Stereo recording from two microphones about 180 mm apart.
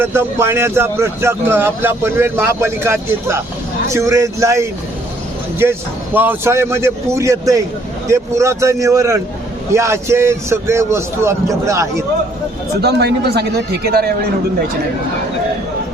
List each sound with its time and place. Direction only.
0.0 s a man's voice: 15° right (ahead or behind)
6.1 s a man's voice: 10° right (ahead or behind)
12.8 s speech: 65° right (ahead or behind)